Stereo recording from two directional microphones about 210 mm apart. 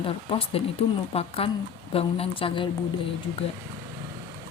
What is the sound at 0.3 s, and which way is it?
Speech, 25° left (ahead or behind).